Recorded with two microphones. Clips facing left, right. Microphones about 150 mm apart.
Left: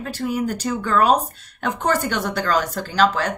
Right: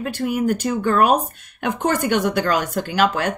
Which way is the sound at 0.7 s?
45° right (ahead or behind).